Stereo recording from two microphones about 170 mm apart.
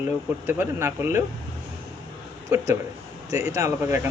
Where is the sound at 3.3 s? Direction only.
20° right (ahead or behind).